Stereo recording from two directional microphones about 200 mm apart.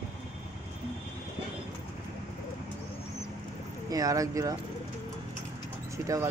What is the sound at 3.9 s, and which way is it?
Speech, 15° right (ahead or behind).